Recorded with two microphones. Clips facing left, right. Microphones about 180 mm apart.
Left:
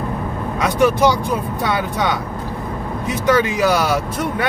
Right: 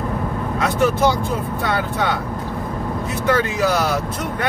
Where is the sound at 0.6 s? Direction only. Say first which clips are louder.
Left 3 dB; 15° left (ahead or behind).